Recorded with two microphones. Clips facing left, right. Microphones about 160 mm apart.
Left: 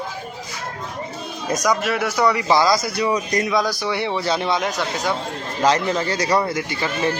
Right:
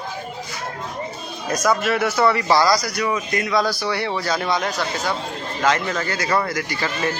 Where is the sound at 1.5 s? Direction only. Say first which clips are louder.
Left 1 dB; 30° left (ahead or behind).